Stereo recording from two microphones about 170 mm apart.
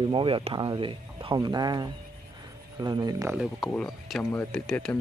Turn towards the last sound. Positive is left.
turn(degrees=5)  # may be behind; listen again after turning